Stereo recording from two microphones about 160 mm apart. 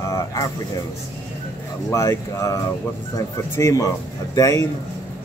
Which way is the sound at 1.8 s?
20° left (ahead or behind).